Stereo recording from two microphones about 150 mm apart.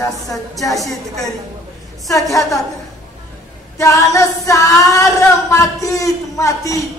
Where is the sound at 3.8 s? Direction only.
20° left (ahead or behind).